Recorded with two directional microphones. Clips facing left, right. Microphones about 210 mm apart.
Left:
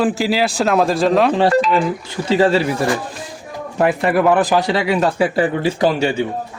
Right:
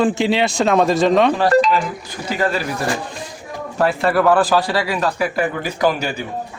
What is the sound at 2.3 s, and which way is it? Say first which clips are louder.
Speech: left 6 dB; 30° left (ahead or behind).